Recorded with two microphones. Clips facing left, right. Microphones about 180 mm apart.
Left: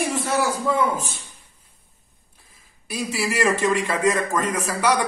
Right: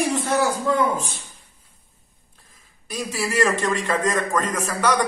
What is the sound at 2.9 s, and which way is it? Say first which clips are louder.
A man's voice: left 1 dB; 10° left (ahead or behind).